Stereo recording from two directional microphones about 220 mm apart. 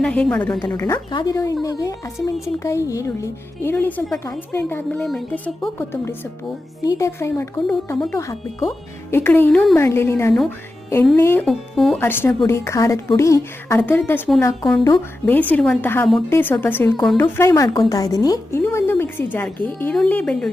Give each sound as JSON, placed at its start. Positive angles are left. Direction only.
{"t": 0.0, "sound": "speech", "side_deg": 5}
{"t": 11.4, "sound": "speech", "side_deg": 0}